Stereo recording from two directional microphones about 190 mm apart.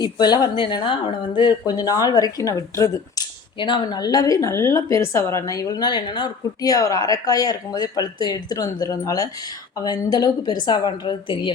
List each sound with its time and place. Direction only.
0.0 s speech: 20° left (ahead or behind)